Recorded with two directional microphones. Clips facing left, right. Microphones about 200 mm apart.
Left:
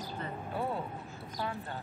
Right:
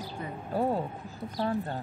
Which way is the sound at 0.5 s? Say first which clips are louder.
Right 8 dB; 40° right (ahead or behind).